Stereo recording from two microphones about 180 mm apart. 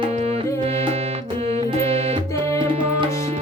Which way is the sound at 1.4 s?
35° right (ahead or behind).